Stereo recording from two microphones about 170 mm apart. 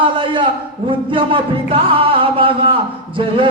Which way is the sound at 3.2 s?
30° right (ahead or behind).